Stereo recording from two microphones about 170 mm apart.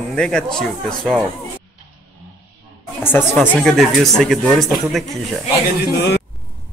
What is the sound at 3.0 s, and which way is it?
Speech, 15° left (ahead or behind).